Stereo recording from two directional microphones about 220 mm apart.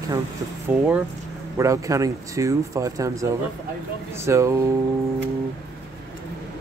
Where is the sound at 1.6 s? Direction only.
15° right (ahead or behind).